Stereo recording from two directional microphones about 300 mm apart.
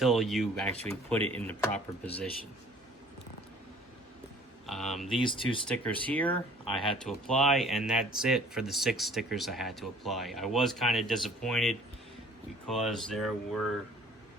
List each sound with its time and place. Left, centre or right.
0.0 s speech: centre
1.2 s speech: centre
1.5 s speech: centre
4.6 s speech: centre
5.2 s speech: centre
5.6 s speech: centre